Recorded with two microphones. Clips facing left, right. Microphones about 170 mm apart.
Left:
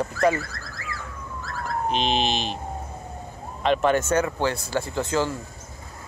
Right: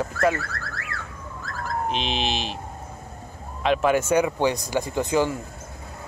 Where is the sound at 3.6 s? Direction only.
5° right (ahead or behind).